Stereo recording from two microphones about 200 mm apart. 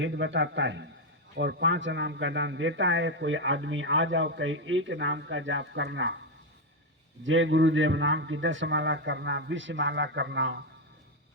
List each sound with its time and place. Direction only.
0.0 s a man's voice: 65° right (ahead or behind)
7.3 s speech: 70° right (ahead or behind)